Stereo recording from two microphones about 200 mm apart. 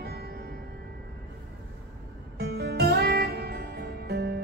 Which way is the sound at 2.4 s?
55° right (ahead or behind).